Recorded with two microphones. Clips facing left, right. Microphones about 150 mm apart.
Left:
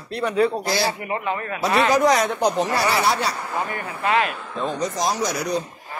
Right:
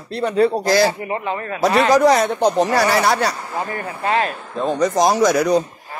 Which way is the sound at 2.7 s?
45° right (ahead or behind).